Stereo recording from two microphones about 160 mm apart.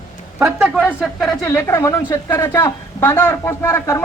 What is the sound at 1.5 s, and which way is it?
Speech, 20° left (ahead or behind).